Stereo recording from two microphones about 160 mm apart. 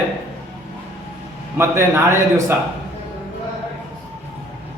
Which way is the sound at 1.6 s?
15° right (ahead or behind).